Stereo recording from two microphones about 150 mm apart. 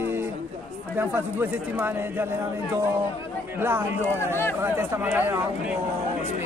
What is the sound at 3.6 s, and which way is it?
Speech, 15° right (ahead or behind).